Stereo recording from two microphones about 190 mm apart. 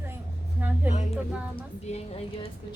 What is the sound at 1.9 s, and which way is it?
Speech, 30° left (ahead or behind).